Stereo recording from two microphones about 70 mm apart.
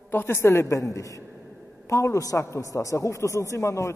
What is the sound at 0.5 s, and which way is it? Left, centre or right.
A man's voice, left.